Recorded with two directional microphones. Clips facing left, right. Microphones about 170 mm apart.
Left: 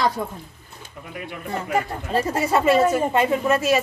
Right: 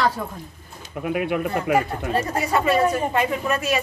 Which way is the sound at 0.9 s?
70° right (ahead or behind).